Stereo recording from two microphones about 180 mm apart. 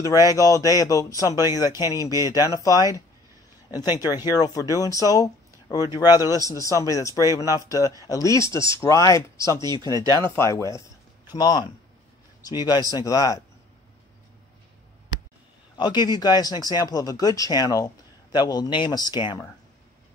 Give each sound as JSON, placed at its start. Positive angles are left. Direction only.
{"t": 0.0, "sound": "speech", "side_deg": 20}
{"t": 15.8, "sound": "speech", "side_deg": 25}